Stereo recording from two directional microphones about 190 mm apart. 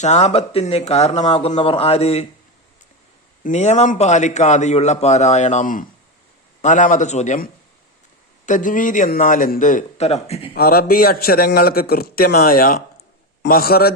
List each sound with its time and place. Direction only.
0.0 s a man's voice: 35° left (ahead or behind)
3.4 s a man's voice: 35° left (ahead or behind)
10.5 s a man's voice: 50° left (ahead or behind)